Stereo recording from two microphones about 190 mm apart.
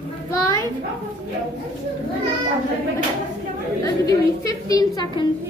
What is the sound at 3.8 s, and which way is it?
A woman's voice, 20° left (ahead or behind).